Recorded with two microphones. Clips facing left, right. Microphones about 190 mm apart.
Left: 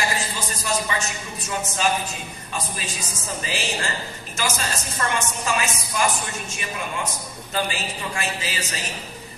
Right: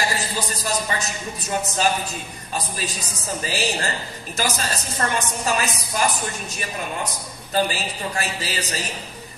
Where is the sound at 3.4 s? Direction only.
35° right (ahead or behind).